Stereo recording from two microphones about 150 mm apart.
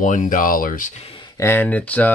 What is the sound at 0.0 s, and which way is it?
Speech, 60° left (ahead or behind).